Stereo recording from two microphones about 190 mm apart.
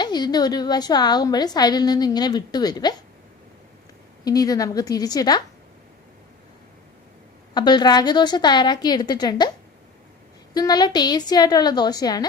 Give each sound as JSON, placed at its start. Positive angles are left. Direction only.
{"t": 0.0, "sound": "a woman's voice", "side_deg": 20}
{"t": 4.2, "sound": "a woman's voice", "side_deg": 20}
{"t": 7.5, "sound": "a woman's voice", "side_deg": 25}
{"t": 10.5, "sound": "a woman's voice", "side_deg": 20}